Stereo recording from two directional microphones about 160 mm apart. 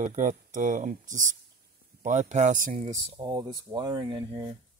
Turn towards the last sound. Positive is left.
turn(degrees=-30)  # may be behind; listen again after turning